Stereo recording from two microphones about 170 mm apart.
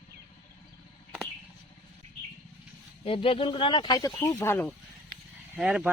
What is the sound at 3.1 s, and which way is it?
Speech, 35° left (ahead or behind).